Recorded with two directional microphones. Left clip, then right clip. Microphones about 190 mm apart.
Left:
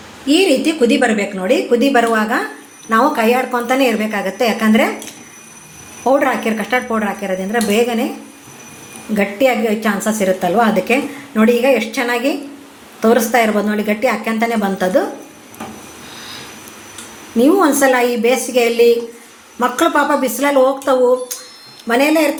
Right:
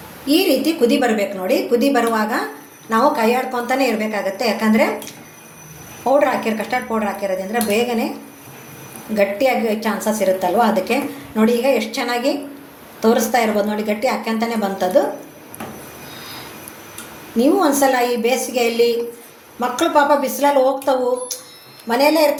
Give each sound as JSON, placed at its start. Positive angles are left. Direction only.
{"t": 0.3, "sound": "a woman's voice", "side_deg": 30}
{"t": 6.1, "sound": "a woman's voice", "side_deg": 45}
{"t": 9.1, "sound": "a woman's voice", "side_deg": 45}
{"t": 17.3, "sound": "a woman's voice", "side_deg": 45}
{"t": 21.8, "sound": "a woman's voice", "side_deg": 45}